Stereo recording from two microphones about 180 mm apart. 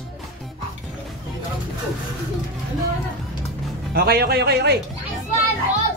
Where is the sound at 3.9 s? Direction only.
60° right (ahead or behind).